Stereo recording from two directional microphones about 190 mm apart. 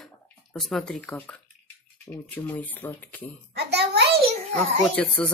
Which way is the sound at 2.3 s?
10° left (ahead or behind).